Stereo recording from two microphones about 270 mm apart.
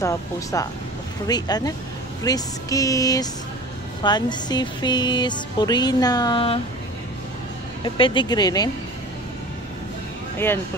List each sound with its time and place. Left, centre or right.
0.0 s speech: centre
7.8 s speech: centre